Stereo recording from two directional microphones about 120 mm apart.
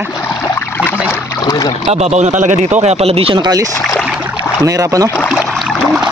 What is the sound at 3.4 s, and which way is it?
Speech, 35° right (ahead or behind).